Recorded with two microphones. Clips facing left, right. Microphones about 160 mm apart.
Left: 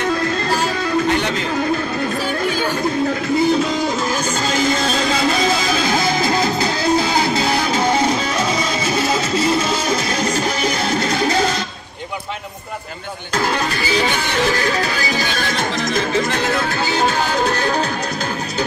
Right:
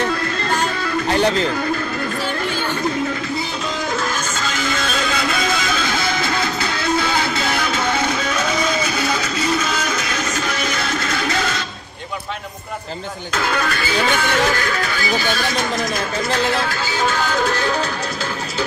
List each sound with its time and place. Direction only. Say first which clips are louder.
1.1 s speech: right 3 dB; 35° right (ahead or behind)
4.4 s music: left 7 dB; 35° left (ahead or behind)
13.4 s music: left 1 dB; 30° left (ahead or behind)
16.6 s music: left 3 dB; 40° left (ahead or behind)